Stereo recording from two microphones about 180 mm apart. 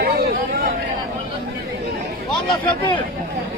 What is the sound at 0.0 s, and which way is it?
Chatter, 55° right (ahead or behind).